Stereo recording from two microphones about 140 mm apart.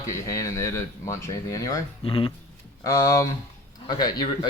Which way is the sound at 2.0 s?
40° left (ahead or behind).